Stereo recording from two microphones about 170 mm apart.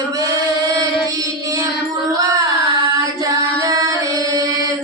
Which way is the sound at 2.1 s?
20° right (ahead or behind).